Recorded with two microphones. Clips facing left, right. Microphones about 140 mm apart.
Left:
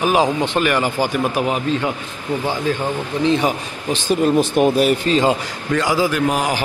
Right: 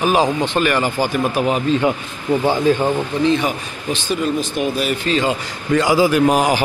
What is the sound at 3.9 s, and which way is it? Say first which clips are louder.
Speech: left 3 dB; 45° left (ahead or behind).